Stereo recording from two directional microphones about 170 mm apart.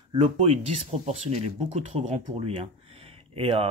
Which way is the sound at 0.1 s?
35° right (ahead or behind).